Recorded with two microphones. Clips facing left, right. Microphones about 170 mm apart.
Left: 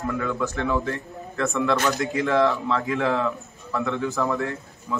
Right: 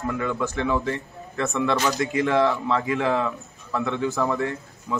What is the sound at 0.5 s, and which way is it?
Speech, 15° right (ahead or behind).